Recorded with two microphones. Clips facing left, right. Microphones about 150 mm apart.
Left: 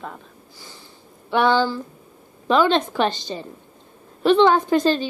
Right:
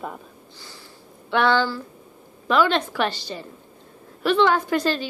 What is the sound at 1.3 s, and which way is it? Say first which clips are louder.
A woman's voice: left 2 dB; 15° left (ahead or behind).